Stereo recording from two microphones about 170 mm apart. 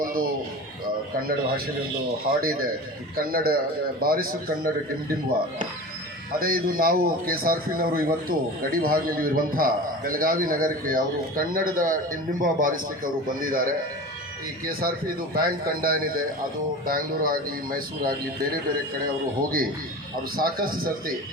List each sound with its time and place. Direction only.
0.0 s a sound: 55° right (ahead or behind)
2.4 s a man's voice: 60° right (ahead or behind)
6.4 s a man's voice: 60° right (ahead or behind)
19.4 s a man's voice: 55° right (ahead or behind)